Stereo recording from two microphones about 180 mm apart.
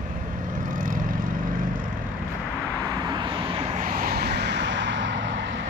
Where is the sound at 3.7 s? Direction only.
50° right (ahead or behind); by 5.6 s 90° right.